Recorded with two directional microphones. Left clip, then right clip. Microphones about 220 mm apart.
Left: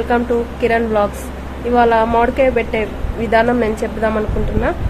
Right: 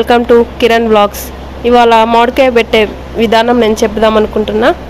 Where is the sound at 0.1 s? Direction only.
35° right (ahead or behind).